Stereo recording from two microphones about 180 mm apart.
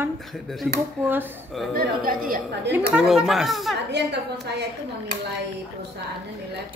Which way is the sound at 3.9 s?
70° right (ahead or behind).